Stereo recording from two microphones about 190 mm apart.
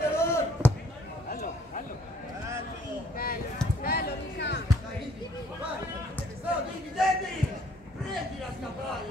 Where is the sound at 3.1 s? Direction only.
50° left (ahead or behind).